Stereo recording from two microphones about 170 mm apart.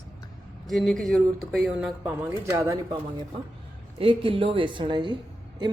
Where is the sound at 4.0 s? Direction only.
30° right (ahead or behind).